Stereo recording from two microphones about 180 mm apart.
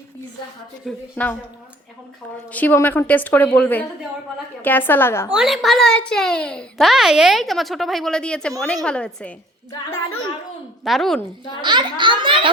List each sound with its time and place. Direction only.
0.9 s a woman's voice: 10° left (ahead or behind)
2.5 s a woman's voice: 10° left (ahead or behind)
5.3 s a child's voice: 5° right (ahead or behind)
10.8 s a child's voice: centre (ahead or behind)
11.6 s a child's voice: 25° right (ahead or behind)